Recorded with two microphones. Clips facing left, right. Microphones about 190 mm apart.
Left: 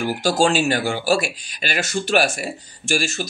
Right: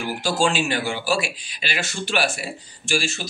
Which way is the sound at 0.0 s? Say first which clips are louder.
Left 4 dB; 40° left (ahead or behind).